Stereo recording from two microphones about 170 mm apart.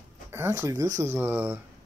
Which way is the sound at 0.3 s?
15° right (ahead or behind).